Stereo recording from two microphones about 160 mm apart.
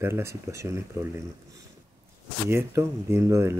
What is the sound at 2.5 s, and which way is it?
Speech, 15° right (ahead or behind).